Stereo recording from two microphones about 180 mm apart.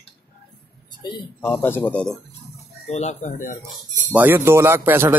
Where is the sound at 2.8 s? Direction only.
40° left (ahead or behind).